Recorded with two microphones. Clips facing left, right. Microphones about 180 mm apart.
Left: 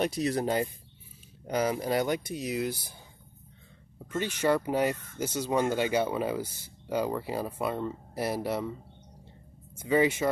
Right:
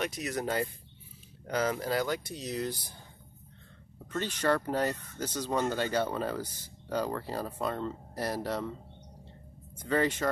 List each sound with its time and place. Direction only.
0.0 s speech: 30° left (ahead or behind)
1.4 s speech: 15° left (ahead or behind)
4.4 s speech: 10° left (ahead or behind)
9.8 s speech: 10° left (ahead or behind)